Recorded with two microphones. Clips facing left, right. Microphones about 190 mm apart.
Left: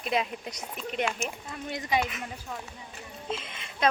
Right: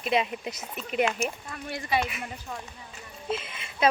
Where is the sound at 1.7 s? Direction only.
15° left (ahead or behind).